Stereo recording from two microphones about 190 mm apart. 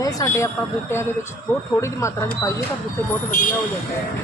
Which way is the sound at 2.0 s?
15° left (ahead or behind).